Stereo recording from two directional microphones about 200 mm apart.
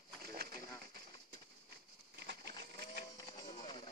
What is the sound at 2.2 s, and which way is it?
Bird, 55° right (ahead or behind).